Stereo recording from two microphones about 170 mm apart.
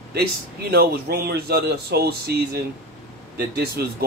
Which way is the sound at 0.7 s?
65° right (ahead or behind).